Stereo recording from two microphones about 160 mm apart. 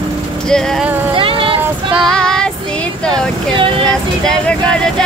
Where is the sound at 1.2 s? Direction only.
35° right (ahead or behind).